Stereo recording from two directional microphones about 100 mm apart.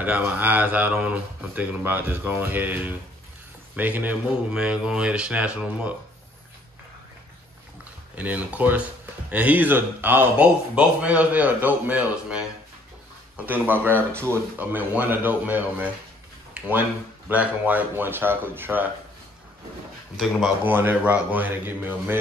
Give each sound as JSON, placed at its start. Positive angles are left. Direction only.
{"t": 0.0, "sound": "speech", "side_deg": -15}
{"t": 8.2, "sound": "speech", "side_deg": -15}
{"t": 13.5, "sound": "speech", "side_deg": -20}
{"t": 16.5, "sound": "a sound", "side_deg": -15}
{"t": 17.3, "sound": "speech", "side_deg": -15}
{"t": 20.2, "sound": "speech", "side_deg": 0}
{"t": 20.6, "sound": "speech", "side_deg": -20}